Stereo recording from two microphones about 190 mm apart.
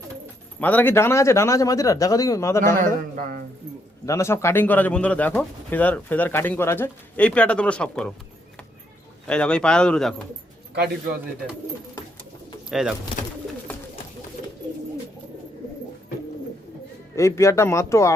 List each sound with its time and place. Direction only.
0.6 s speech: 10° left (ahead or behind)
2.8 s speech: 50° right (ahead or behind)
4.0 s speech: 15° left (ahead or behind)
9.2 s speech: 5° left (ahead or behind)
12.7 s speech: 5° right (ahead or behind)
17.2 s speech: 15° left (ahead or behind)